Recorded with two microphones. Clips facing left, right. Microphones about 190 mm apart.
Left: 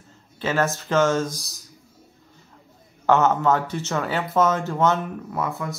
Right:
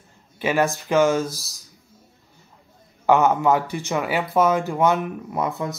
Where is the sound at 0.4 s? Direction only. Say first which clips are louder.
Right 2 dB; 10° right (ahead or behind).